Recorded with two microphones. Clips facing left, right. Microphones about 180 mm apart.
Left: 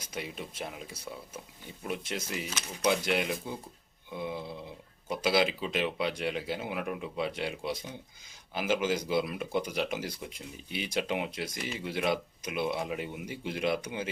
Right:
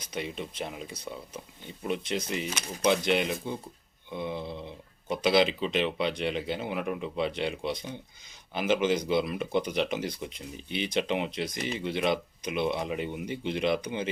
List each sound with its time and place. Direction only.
0.0 s speech: 5° left (ahead or behind)